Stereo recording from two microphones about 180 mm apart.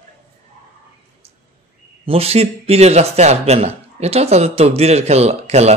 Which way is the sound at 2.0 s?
35° right (ahead or behind).